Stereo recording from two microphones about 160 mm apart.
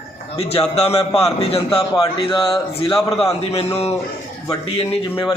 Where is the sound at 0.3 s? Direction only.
40° left (ahead or behind).